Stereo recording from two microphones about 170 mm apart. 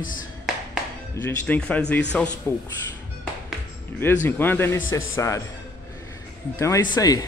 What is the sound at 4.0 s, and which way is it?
A man's voice, 10° left (ahead or behind).